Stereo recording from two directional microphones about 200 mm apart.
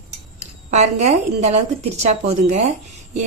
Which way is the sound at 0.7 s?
35° right (ahead or behind).